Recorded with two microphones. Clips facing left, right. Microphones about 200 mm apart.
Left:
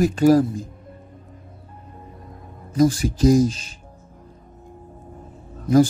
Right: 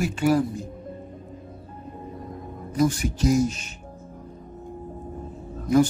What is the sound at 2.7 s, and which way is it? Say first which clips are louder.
Speech: left 5 dB; 35° left (ahead or behind).